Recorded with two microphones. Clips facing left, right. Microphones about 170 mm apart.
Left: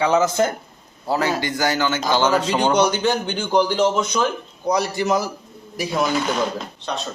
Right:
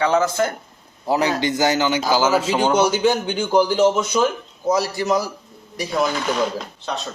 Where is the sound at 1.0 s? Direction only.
15° right (ahead or behind).